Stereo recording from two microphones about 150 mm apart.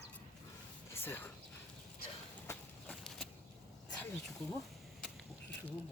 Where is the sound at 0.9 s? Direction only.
15° left (ahead or behind).